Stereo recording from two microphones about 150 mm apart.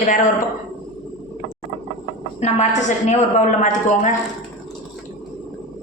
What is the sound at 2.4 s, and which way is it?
A woman's voice, 50° left (ahead or behind).